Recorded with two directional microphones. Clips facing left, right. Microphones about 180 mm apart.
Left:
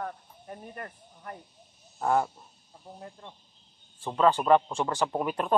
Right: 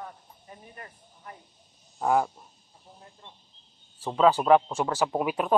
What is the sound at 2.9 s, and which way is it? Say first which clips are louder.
Speech: left 7 dB; 65° left (ahead or behind).